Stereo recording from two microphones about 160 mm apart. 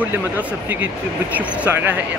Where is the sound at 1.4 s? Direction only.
10° right (ahead or behind).